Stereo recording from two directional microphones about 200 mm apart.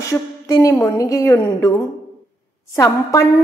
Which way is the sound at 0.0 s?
15° left (ahead or behind).